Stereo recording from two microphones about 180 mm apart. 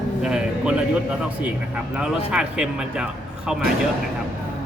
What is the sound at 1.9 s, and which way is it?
Speech, 5° right (ahead or behind).